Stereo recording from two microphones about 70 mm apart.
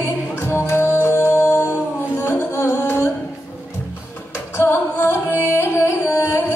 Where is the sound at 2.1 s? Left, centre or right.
Left.